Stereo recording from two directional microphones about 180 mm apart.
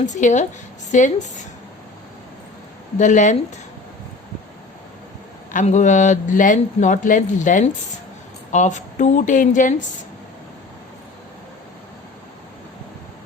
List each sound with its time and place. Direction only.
0.0 s a man's voice: 45° left (ahead or behind)
3.0 s a man's voice: 45° left (ahead or behind)
5.5 s a man's voice: 45° left (ahead or behind)